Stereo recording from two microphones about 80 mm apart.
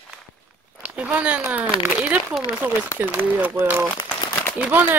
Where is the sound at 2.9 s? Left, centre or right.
Right.